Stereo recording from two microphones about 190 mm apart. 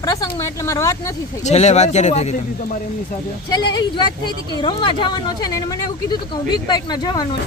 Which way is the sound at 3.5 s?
20° left (ahead or behind).